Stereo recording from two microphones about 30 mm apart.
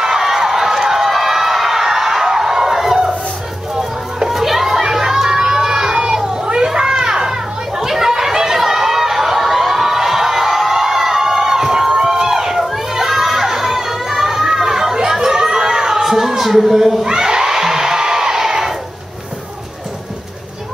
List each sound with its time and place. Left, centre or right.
0.0 s run: centre
2.2 s crowd: centre
4.3 s a sound: centre
6.5 s children playing: right
7.9 s chatter: centre
12.6 s a sound: centre
17.0 s crowd: right